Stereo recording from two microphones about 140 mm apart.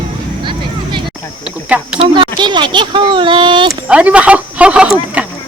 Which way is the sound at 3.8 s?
10° right (ahead or behind).